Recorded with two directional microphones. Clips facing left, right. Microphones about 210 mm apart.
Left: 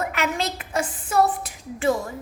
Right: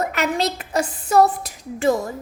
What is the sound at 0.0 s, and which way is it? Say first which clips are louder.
A woman's voice: right 4 dB; 40° right (ahead or behind).